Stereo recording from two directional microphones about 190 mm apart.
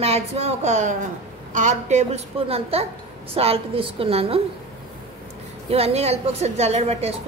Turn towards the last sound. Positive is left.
turn(degrees=-35)  # may be behind; listen again after turning